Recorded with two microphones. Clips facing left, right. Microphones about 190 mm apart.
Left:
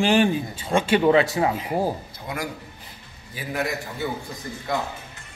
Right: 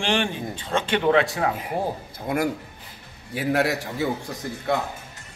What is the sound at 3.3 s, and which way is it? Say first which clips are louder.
Speech: right 5 dB; 75° right (ahead or behind).